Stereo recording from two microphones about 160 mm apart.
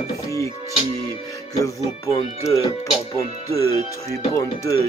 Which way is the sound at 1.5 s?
20° left (ahead or behind).